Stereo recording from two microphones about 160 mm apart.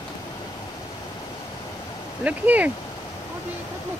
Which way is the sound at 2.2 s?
10° right (ahead or behind).